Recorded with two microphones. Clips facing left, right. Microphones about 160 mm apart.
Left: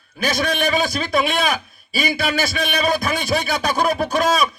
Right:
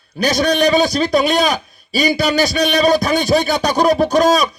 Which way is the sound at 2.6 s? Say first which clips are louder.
Right 8 dB; 30° right (ahead or behind).